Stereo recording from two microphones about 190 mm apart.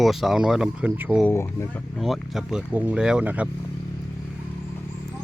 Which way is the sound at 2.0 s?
Centre (ahead or behind).